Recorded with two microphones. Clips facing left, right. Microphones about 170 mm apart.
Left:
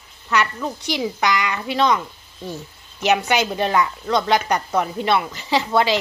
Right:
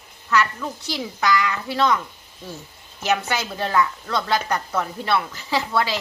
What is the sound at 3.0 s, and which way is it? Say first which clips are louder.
A woman's voice: left 5 dB; 20° left (ahead or behind).